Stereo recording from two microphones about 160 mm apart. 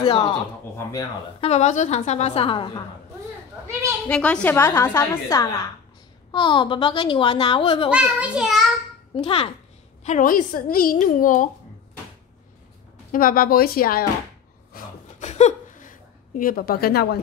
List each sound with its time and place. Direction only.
0.0 s speech: 25° left (ahead or behind)
1.4 s a woman's voice: 45° left (ahead or behind)
4.1 s a woman's voice: 5° left (ahead or behind)
6.3 s a woman's voice: 30° left (ahead or behind)
7.9 s a child's voice: 5° right (ahead or behind)
9.1 s a woman's voice: 35° left (ahead or behind)
10.0 s a woman's voice: 55° left (ahead or behind)
13.1 s a woman's voice: 60° left (ahead or behind)
15.1 s a sound: 45° left (ahead or behind); by 17.2 s 75° left (ahead or behind)